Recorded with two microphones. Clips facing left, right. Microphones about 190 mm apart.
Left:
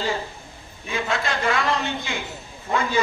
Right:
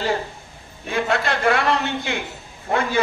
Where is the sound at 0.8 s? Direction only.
60° right (ahead or behind).